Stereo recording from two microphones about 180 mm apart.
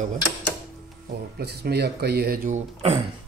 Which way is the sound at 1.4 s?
60° right (ahead or behind).